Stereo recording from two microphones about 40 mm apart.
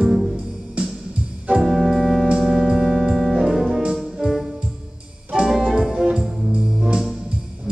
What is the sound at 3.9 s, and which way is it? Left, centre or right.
Music, centre.